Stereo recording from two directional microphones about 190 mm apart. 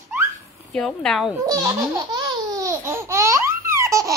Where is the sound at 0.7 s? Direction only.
5° left (ahead or behind).